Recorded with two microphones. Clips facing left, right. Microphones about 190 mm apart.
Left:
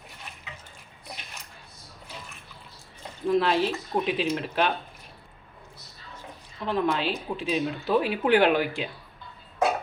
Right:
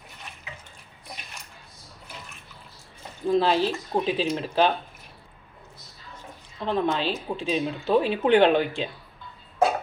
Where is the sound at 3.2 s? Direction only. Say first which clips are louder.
Right 1 dB; 30° right (ahead or behind).